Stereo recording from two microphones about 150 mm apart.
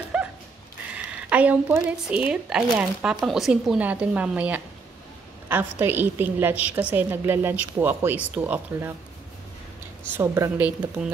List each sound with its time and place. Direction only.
0.1 s a sound: 5° right (ahead or behind)
0.9 s a woman's voice: 10° right (ahead or behind)
10.1 s a woman's voice: 15° right (ahead or behind)